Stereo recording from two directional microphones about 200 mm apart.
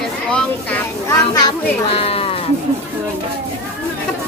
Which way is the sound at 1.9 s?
30° left (ahead or behind).